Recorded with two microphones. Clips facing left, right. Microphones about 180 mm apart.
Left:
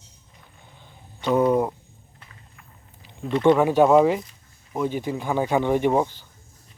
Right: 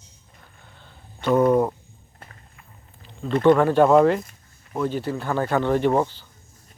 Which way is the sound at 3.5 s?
10° left (ahead or behind).